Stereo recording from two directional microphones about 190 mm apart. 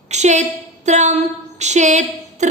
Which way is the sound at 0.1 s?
35° right (ahead or behind).